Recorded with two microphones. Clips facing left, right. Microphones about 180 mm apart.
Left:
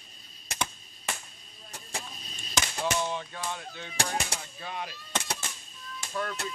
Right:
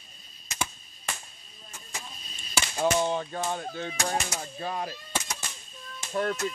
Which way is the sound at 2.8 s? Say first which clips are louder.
Right 8 dB; 40° right (ahead or behind).